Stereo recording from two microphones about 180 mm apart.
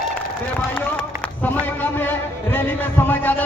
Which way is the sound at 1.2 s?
10° left (ahead or behind).